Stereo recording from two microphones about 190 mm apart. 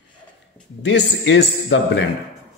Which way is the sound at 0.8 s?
70° left (ahead or behind).